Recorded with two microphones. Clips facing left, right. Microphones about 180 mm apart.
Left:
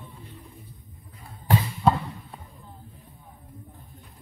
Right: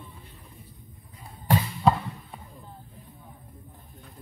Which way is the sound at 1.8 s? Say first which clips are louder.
Even; centre (ahead or behind).